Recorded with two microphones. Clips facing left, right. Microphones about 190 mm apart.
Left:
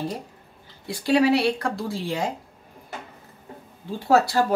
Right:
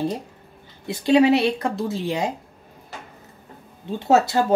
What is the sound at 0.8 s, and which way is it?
Speech, 20° right (ahead or behind).